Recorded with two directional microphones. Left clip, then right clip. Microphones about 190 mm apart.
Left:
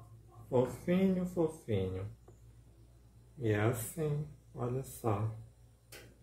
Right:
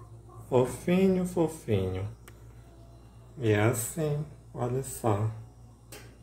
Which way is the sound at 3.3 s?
15° right (ahead or behind).